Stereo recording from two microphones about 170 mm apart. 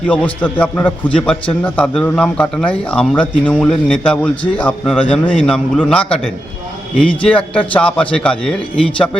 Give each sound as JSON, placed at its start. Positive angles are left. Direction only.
{"t": 0.1, "sound": "a man's voice", "side_deg": 5}